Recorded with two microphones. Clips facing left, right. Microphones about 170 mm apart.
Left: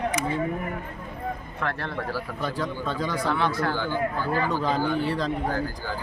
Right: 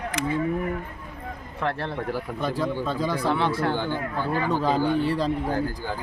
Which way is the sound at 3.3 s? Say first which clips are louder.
Right 1 dB; 30° right (ahead or behind).